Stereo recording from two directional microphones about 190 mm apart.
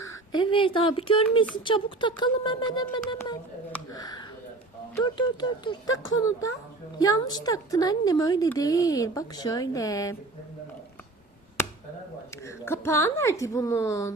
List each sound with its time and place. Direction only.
0.0 s speech: 20° left (ahead or behind)
7.0 s speech: 20° left (ahead or behind)
12.5 s a woman's voice: 10° left (ahead or behind)